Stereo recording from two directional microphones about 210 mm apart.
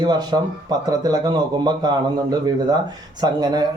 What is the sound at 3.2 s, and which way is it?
Speech, 20° right (ahead or behind).